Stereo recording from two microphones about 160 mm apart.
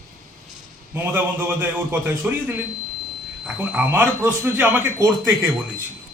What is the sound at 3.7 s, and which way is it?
A man's voice, 10° right (ahead or behind).